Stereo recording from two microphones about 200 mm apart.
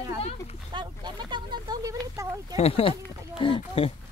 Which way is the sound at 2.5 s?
30° left (ahead or behind).